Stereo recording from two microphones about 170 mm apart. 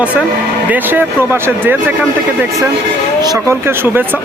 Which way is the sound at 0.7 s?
10° right (ahead or behind).